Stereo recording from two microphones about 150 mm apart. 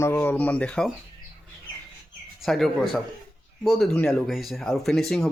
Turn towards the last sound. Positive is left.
turn(degrees=5)  # may be behind; listen again after turning